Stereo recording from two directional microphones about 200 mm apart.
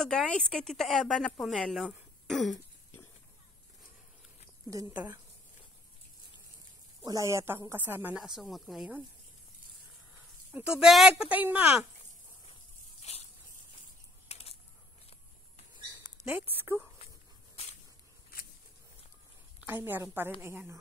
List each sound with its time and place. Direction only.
0.0 s speech: centre (ahead or behind)
4.6 s speech: 15° right (ahead or behind)
7.1 s speech: 15° right (ahead or behind)
10.8 s speech: centre (ahead or behind)
13.1 s a sound: 35° left (ahead or behind)
14.3 s a sound: 30° left (ahead or behind)
16.0 s a woman's voice: 10° right (ahead or behind)
19.6 s speech: 10° right (ahead or behind)